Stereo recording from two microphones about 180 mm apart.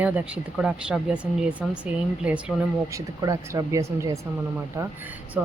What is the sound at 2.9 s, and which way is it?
Speech, 20° right (ahead or behind).